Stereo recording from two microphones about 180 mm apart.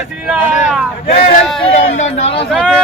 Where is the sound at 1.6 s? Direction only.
35° left (ahead or behind).